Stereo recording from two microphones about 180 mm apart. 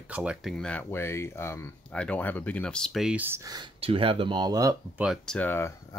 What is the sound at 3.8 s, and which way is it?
Speech, 30° right (ahead or behind).